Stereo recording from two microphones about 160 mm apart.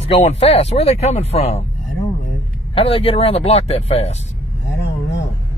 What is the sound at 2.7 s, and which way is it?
Speech, 35° left (ahead or behind).